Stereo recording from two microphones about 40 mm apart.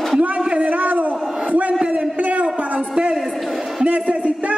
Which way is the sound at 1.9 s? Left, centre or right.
Right.